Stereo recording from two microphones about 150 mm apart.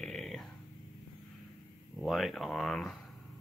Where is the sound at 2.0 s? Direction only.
Centre (ahead or behind).